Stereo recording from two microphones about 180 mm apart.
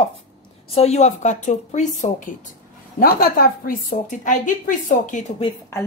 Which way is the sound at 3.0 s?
55° left (ahead or behind).